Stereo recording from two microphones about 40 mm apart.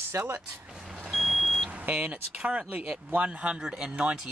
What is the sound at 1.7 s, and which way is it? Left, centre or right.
Speech, right.